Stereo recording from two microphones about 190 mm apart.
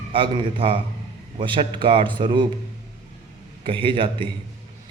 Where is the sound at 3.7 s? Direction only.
25° right (ahead or behind).